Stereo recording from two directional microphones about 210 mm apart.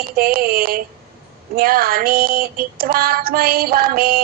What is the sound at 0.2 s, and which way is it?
Female singing, 45° right (ahead or behind).